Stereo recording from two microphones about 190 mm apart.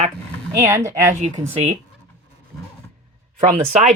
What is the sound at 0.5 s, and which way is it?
Speech, 15° right (ahead or behind).